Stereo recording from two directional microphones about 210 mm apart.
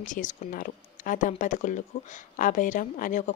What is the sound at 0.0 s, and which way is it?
A woman's voice, 40° left (ahead or behind).